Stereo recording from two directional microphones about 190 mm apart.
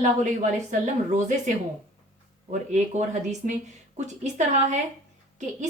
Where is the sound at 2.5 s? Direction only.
40° right (ahead or behind).